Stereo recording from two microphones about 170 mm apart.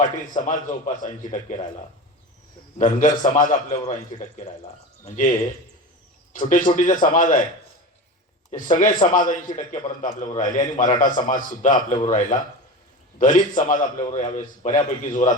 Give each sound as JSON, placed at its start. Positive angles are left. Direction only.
{"t": 0.3, "sound": "a man's voice", "side_deg": 50}
{"t": 2.7, "sound": "a man's voice", "side_deg": 50}
{"t": 6.3, "sound": "a man's voice", "side_deg": 50}
{"t": 8.5, "sound": "a man's voice", "side_deg": 50}